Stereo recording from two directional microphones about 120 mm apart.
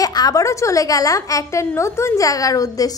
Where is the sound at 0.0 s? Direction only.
30° left (ahead or behind).